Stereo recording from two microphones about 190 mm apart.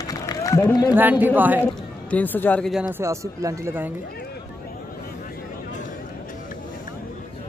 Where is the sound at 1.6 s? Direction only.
10° left (ahead or behind).